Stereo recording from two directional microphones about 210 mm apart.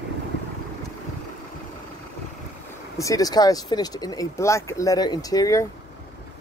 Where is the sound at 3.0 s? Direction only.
15° left (ahead or behind).